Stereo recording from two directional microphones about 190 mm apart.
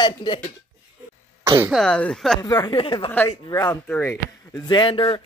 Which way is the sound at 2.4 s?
20° left (ahead or behind).